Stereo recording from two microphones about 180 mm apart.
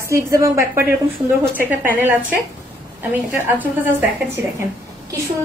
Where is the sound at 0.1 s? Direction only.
15° right (ahead or behind).